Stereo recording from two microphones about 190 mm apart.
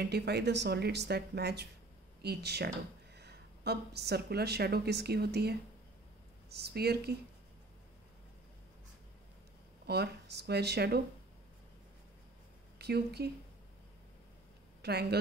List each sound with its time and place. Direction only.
0.0 s a woman's voice: 60° right (ahead or behind)
9.8 s speech: 60° right (ahead or behind)
12.7 s speech: 60° right (ahead or behind)
14.8 s speech: 60° right (ahead or behind)